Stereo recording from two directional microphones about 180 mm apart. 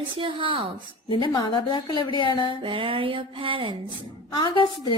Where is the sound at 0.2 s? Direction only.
30° right (ahead or behind).